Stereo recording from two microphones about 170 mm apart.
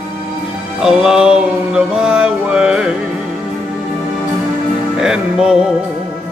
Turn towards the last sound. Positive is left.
turn(degrees=-5)  # may be behind; listen again after turning